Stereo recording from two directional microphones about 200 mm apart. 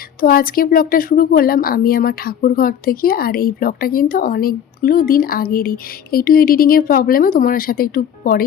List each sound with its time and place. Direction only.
0.2 s speech: 45° left (ahead or behind)